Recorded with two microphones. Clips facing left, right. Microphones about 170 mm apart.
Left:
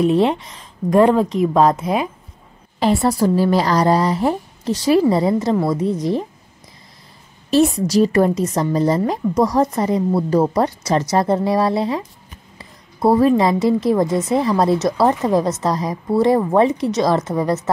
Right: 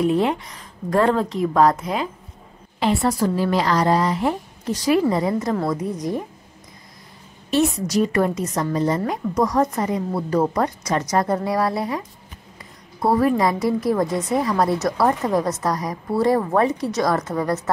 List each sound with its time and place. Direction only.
0.0 s speech: 25° left (ahead or behind)
2.8 s a woman's voice: 35° left (ahead or behind)
7.5 s a woman's voice: 30° left (ahead or behind)